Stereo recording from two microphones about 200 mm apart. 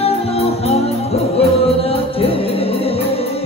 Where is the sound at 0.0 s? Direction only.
30° left (ahead or behind).